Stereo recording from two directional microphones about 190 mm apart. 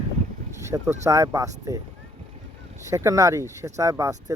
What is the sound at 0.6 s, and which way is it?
Vehicle, 15° right (ahead or behind).